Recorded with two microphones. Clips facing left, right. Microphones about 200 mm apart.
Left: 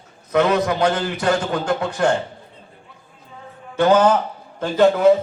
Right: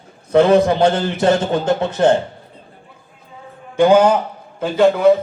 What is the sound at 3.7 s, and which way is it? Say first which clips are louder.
A man's voice: right 3 dB; 15° right (ahead or behind).